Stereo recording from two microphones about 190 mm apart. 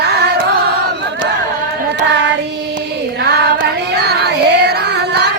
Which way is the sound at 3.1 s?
60° right (ahead or behind).